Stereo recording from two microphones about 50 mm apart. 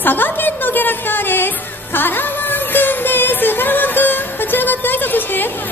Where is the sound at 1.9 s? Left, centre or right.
Left.